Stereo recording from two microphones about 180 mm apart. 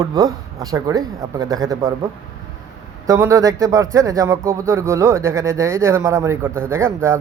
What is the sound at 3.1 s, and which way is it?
Speech, 15° right (ahead or behind).